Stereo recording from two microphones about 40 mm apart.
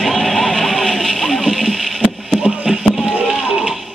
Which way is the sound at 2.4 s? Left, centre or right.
Centre.